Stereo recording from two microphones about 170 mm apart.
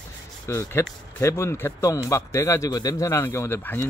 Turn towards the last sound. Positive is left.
turn(degrees=10)  # may be behind; listen again after turning